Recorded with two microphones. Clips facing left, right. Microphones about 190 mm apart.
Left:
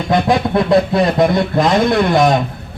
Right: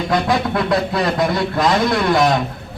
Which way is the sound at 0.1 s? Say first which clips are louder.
Left 5 dB; 25° left (ahead or behind).